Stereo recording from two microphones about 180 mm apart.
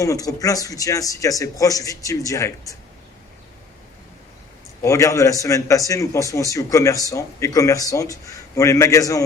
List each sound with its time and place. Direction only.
0.0 s speech: 20° left (ahead or behind)
4.8 s a man's voice: 15° left (ahead or behind)